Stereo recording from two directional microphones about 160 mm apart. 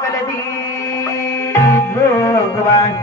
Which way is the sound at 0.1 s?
20° left (ahead or behind).